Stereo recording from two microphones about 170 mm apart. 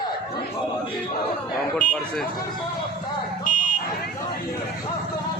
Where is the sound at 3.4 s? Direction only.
50° left (ahead or behind).